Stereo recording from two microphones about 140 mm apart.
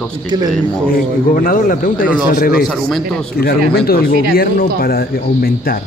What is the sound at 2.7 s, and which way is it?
Speech, 5° left (ahead or behind).